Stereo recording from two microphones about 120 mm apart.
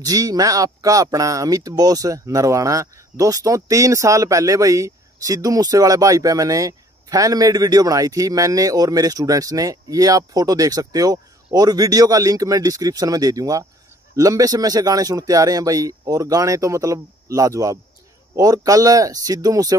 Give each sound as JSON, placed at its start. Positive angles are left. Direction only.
{"t": 0.0, "sound": "speech", "side_deg": -30}